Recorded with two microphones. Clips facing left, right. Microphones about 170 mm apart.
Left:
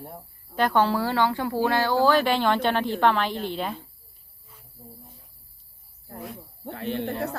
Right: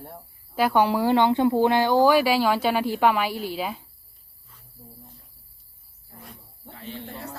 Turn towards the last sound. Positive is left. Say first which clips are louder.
# left 8 dB
turn(degrees=65)  # may be behind; listen again after turning